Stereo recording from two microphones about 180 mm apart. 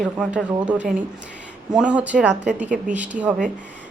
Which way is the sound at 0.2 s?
5° right (ahead or behind).